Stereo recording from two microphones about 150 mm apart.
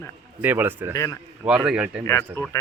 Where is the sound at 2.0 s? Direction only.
15° left (ahead or behind).